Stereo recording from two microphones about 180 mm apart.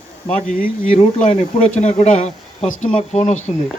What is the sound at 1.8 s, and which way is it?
Speech, 40° left (ahead or behind).